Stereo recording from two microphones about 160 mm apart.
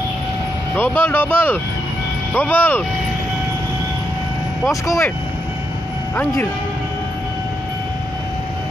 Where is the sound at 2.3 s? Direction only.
10° left (ahead or behind).